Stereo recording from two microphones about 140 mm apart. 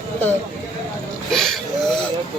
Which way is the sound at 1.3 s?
5° left (ahead or behind).